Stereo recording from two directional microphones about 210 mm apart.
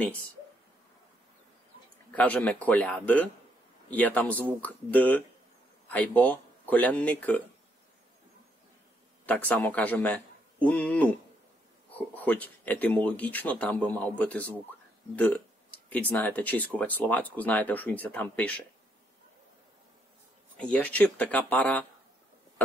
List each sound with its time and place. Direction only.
2.1 s speech: 5° left (ahead or behind)
9.2 s a man's voice: 5° left (ahead or behind)
20.5 s speech: 5° left (ahead or behind)